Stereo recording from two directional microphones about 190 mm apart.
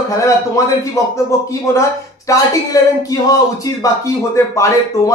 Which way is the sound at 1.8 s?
15° left (ahead or behind).